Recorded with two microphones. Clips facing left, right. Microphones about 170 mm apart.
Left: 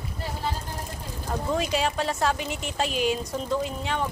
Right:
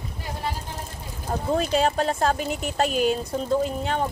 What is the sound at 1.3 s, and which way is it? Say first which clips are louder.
Speech: right 2 dB; 30° right (ahead or behind).